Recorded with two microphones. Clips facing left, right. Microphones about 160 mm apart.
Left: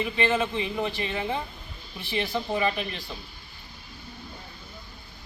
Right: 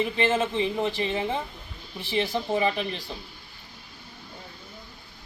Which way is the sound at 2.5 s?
30° right (ahead or behind).